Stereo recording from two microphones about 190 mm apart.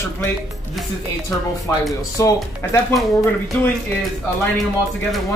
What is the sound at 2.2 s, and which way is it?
Speech, 15° left (ahead or behind).